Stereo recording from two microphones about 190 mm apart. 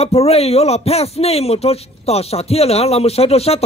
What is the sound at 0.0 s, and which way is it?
Speech, 30° left (ahead or behind).